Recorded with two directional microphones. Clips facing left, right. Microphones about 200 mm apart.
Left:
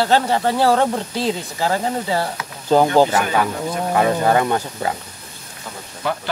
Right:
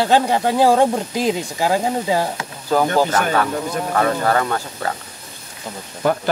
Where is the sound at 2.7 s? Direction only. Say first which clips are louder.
Left 3 dB; 20° left (ahead or behind).